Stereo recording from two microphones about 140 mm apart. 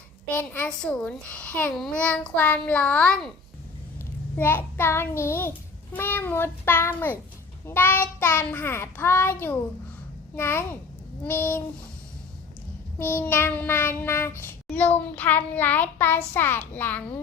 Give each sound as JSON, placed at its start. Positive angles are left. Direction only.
{"t": 0.3, "sound": "a child's voice", "side_deg": 10}
{"t": 4.4, "sound": "a child's voice", "side_deg": 15}
{"t": 13.0, "sound": "a child's voice", "side_deg": 15}